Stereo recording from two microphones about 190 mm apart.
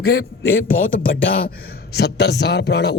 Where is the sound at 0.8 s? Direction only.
90° left.